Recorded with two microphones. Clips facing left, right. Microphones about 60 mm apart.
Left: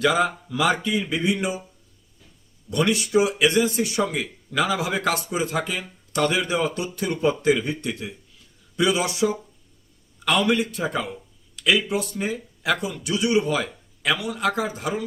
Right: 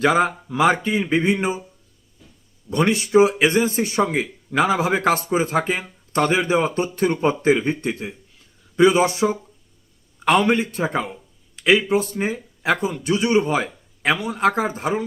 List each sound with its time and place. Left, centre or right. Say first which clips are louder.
0.0 s a man's voice: right 3 dB; right
2.6 s a man's voice: right 2 dB; right